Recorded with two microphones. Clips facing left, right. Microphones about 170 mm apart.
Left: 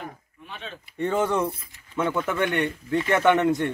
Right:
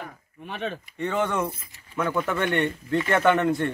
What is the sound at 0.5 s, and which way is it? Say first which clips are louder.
Speech: right 8 dB; 55° right (ahead or behind).